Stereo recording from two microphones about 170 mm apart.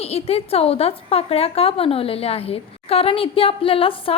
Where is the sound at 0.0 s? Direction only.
35° left (ahead or behind).